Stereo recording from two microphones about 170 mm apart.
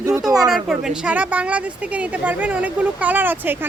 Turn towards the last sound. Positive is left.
turn(degrees=-10)  # may be behind; listen again after turning